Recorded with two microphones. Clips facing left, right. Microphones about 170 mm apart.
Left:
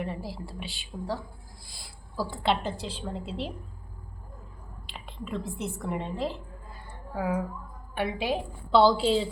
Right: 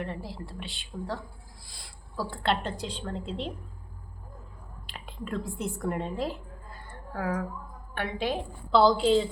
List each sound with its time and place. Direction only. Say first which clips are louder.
0.0 s a woman's voice: left 1 dB; 5° left (ahead or behind)
4.9 s a woman's voice: even; centre (ahead or behind)